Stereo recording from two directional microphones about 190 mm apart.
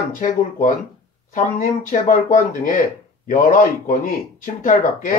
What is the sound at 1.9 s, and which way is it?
Speech, 45° left (ahead or behind).